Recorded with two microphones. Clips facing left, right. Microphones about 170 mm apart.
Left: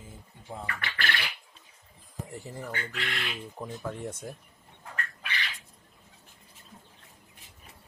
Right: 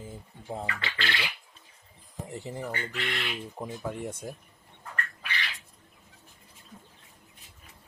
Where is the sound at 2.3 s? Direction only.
20° right (ahead or behind).